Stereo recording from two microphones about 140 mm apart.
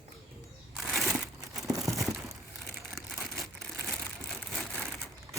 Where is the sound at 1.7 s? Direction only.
25° right (ahead or behind).